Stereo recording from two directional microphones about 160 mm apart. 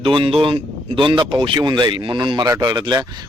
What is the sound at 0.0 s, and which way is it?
Speech, 35° right (ahead or behind).